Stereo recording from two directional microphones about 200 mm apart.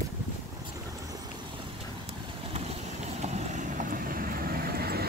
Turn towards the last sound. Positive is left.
turn(degrees=-50)  # may be behind; listen again after turning